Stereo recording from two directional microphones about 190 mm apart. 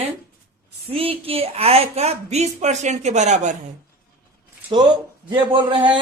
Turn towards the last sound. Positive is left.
turn(degrees=-25)  # may be behind; listen again after turning